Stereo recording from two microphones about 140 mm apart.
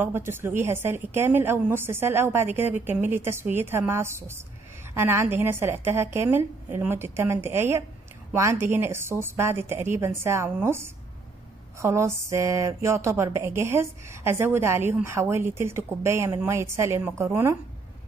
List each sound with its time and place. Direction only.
0.0 s a woman's voice: 15° right (ahead or behind)